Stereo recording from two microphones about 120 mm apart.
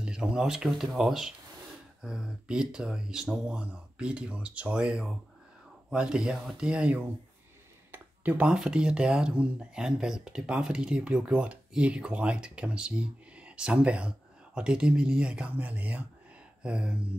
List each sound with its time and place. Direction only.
0.0 s speech: 5° right (ahead or behind)